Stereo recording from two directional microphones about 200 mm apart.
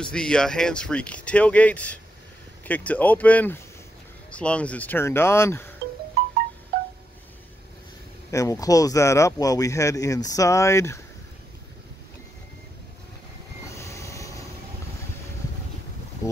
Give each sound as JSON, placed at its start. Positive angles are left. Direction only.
{"t": 0.0, "sound": "speech", "side_deg": 5}
{"t": 8.3, "sound": "speech", "side_deg": 15}
{"t": 13.7, "sound": "train", "side_deg": 15}
{"t": 16.2, "sound": "boat", "side_deg": 15}